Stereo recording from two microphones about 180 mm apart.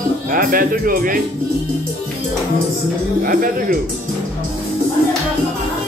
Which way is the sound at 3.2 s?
50° right (ahead or behind).